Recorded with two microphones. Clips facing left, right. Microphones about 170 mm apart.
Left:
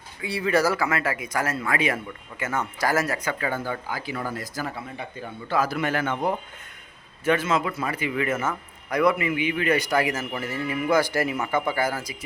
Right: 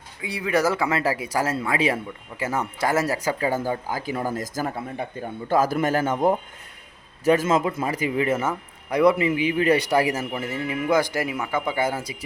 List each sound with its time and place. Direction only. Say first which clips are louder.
0.2 s a man's voice: even; 15° right (ahead or behind); by 6.1 s 40° right (ahead or behind)
7.3 s a man's voice: right 4 dB; 45° right (ahead or behind)
10.4 s speech: left 1 dB; 20° right (ahead or behind)